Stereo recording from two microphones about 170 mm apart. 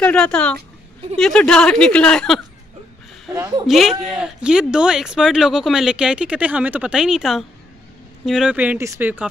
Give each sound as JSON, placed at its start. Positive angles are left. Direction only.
{"t": 0.0, "sound": "speech", "side_deg": 5}
{"t": 3.3, "sound": "speech", "side_deg": -20}
{"t": 3.6, "sound": "speech", "side_deg": 0}